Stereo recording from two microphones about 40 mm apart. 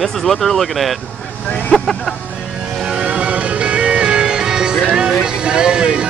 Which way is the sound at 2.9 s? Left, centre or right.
Right.